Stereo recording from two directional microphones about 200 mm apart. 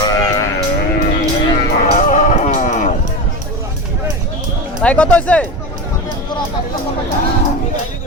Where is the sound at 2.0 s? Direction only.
35° left (ahead or behind).